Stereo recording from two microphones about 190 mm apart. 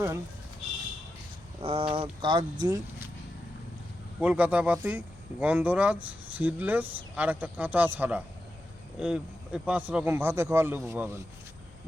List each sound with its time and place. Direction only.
1.6 s speech: 30° right (ahead or behind)
4.2 s speech: 5° right (ahead or behind)